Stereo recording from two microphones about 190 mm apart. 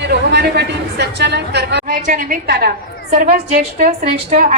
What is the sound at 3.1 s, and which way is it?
A woman's voice, 40° right (ahead or behind).